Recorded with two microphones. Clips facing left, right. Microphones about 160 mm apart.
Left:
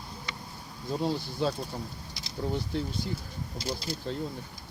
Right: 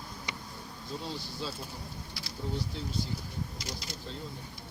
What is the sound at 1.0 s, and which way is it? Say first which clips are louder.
Speech: left 11 dB; 55° left (ahead or behind).